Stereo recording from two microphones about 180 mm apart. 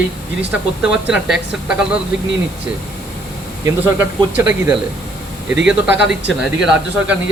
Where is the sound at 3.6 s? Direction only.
10° right (ahead or behind).